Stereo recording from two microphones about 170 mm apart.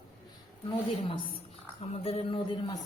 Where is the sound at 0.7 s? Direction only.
30° left (ahead or behind).